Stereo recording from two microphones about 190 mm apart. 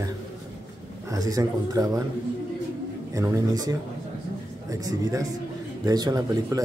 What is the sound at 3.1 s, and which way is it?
Speech, 15° right (ahead or behind).